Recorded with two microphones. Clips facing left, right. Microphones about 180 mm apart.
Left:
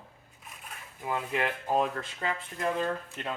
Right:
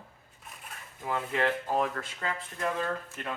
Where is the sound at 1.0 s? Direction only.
15° left (ahead or behind).